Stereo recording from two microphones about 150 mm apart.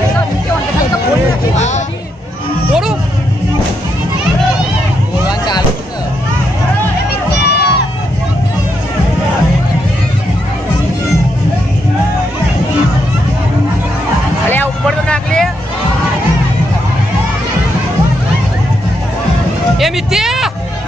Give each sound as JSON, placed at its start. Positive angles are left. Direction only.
{"t": 2.7, "sound": "music", "side_deg": -5}
{"t": 7.4, "sound": "crowd", "side_deg": 90}
{"t": 14.5, "sound": "vehicle", "side_deg": 10}
{"t": 19.8, "sound": "a sound", "side_deg": -5}